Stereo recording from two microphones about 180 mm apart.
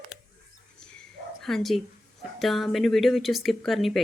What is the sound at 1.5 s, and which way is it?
Speech, centre (ahead or behind).